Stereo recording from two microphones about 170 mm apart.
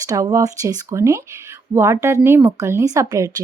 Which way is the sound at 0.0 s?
20° right (ahead or behind).